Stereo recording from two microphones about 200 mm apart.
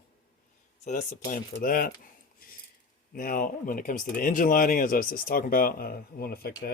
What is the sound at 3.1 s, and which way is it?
Speech, 45° left (ahead or behind).